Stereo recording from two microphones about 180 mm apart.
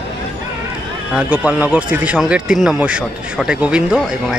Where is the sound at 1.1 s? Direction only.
10° right (ahead or behind).